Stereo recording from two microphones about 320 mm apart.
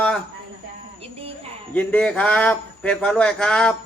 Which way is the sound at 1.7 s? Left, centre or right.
Centre.